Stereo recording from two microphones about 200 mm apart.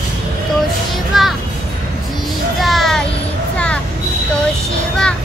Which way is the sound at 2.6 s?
Centre (ahead or behind).